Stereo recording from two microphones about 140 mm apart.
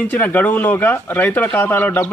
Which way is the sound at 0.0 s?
10° left (ahead or behind).